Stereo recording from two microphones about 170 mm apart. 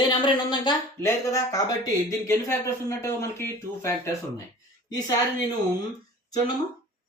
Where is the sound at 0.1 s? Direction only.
25° left (ahead or behind).